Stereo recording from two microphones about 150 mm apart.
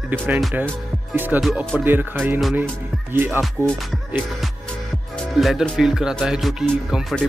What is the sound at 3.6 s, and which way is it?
Music, 20° right (ahead or behind).